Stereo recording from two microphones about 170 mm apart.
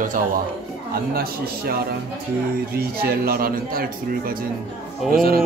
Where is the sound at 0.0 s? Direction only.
50° right (ahead or behind).